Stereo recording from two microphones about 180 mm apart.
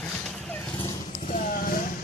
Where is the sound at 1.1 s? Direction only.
45° left (ahead or behind).